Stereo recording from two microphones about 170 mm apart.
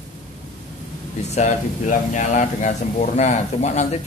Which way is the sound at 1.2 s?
45° left (ahead or behind).